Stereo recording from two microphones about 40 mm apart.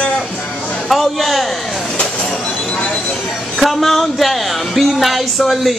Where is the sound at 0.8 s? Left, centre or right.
Centre.